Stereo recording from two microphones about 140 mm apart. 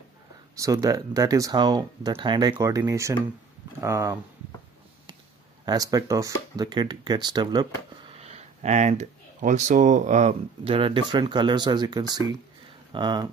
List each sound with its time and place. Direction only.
0.6 s speech: 25° right (ahead or behind)
5.7 s speech: 25° right (ahead or behind)
8.2 s speech: 50° right (ahead or behind)
10.6 s speech: 40° right (ahead or behind)